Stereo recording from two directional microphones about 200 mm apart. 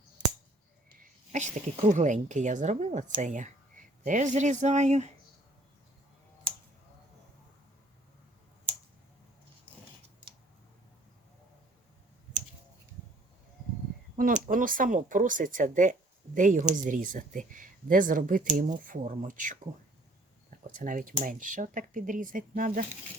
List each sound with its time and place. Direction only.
1.3 s speech: 35° right (ahead or behind)
14.2 s speech: 40° right (ahead or behind)
20.7 s speech: 40° right (ahead or behind)